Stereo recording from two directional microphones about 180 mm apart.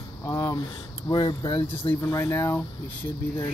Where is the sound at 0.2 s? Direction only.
20° left (ahead or behind).